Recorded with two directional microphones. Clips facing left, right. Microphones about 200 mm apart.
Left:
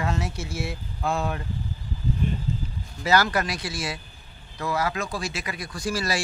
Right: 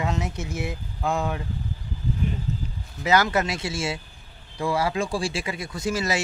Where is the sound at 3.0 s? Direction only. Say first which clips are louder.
Right 1 dB; 20° right (ahead or behind).